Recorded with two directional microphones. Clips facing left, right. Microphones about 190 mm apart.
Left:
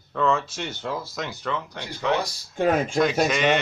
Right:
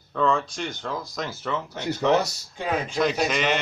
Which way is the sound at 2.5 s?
50° left (ahead or behind).